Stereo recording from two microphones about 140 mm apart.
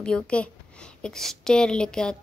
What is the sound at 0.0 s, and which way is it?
A woman's voice, 5° left (ahead or behind).